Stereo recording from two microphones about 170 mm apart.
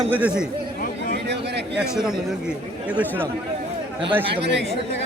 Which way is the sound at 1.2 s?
80° right.